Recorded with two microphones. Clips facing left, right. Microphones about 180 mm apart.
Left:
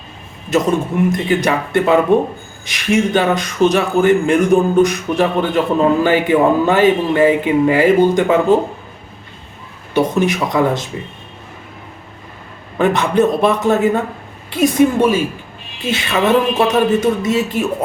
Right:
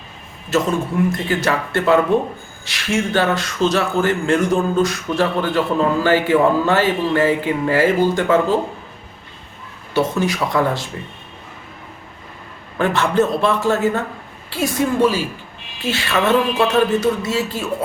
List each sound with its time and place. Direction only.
0.5 s a man's voice: 20° left (ahead or behind)
9.9 s speech: 20° left (ahead or behind)
12.8 s a man's voice: 15° left (ahead or behind)